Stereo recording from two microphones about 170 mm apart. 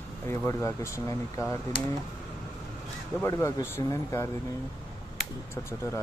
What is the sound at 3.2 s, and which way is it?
Speech, 15° left (ahead or behind).